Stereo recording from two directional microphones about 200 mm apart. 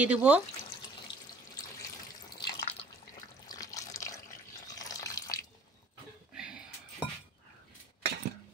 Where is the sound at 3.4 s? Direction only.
15° left (ahead or behind).